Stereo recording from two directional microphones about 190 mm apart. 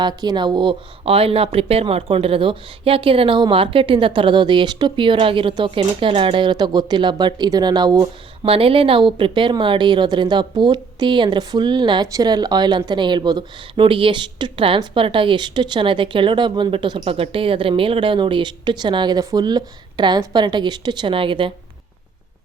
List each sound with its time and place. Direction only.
0.0 s a woman's voice: 20° right (ahead or behind)